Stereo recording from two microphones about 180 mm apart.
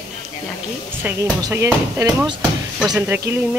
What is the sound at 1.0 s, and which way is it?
Speech, 15° right (ahead or behind).